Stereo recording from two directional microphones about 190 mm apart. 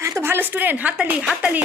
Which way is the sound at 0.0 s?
15° right (ahead or behind).